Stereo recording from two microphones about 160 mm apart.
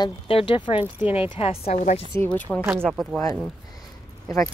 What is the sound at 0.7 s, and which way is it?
Speech, 10° right (ahead or behind).